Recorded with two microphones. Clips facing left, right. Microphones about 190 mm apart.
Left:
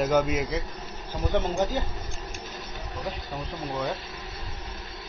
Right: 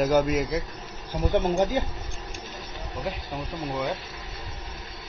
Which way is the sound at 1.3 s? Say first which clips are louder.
Right 3 dB; 15° right (ahead or behind).